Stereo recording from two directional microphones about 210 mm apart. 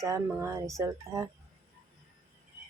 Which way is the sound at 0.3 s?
10° right (ahead or behind).